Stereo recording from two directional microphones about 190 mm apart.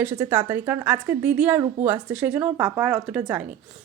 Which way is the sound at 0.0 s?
10° right (ahead or behind).